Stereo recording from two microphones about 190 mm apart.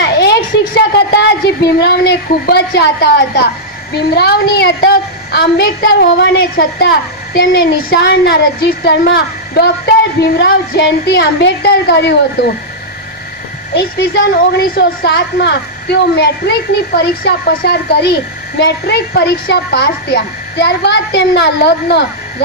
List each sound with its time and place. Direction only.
0.0 s a sound: 60° left (ahead or behind)
0.9 s a woman's voice: 60° left (ahead or behind)
13.7 s a woman's voice: 60° left (ahead or behind)